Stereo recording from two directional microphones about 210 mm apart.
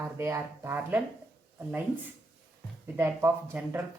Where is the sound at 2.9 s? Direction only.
10° right (ahead or behind).